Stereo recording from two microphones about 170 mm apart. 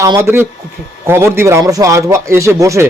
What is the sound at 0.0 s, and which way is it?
A man's voice, 15° right (ahead or behind).